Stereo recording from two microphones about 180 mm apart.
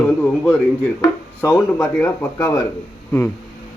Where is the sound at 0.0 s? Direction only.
10° left (ahead or behind).